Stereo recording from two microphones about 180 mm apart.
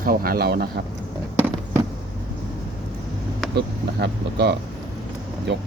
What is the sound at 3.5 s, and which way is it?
Speech, 70° right (ahead or behind).